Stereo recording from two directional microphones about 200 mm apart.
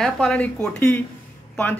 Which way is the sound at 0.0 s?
5° left (ahead or behind).